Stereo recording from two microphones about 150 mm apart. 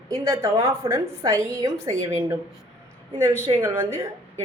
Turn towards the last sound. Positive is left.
turn(degrees=-20)  # may be behind; listen again after turning